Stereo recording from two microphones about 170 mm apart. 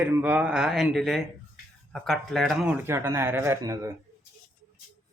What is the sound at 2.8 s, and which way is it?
A man's voice, 15° right (ahead or behind).